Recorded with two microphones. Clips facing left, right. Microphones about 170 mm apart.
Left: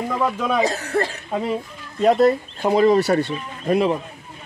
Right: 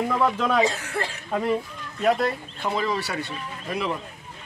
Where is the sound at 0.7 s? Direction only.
40° left (ahead or behind).